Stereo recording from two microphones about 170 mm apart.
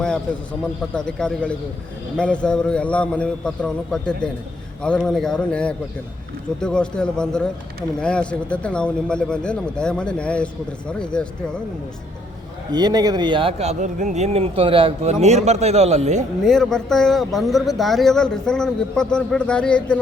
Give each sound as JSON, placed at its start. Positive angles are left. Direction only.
{"t": 0.6, "sound": "speech", "side_deg": 5}
{"t": 12.7, "sound": "speech", "side_deg": -25}
{"t": 16.4, "sound": "speech", "side_deg": 0}